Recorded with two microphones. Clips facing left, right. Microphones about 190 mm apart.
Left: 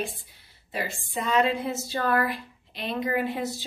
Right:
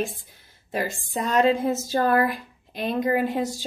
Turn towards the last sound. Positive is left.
turn(degrees=-45)  # may be behind; listen again after turning